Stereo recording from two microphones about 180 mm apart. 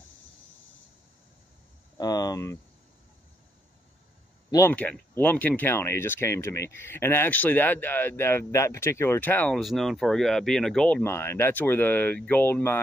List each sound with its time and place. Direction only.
2.0 s speech: 20° left (ahead or behind)
4.5 s speech: 15° left (ahead or behind)